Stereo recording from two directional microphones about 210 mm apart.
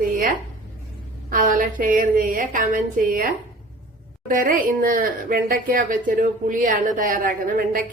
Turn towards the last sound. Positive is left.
turn(degrees=-40)  # may be behind; listen again after turning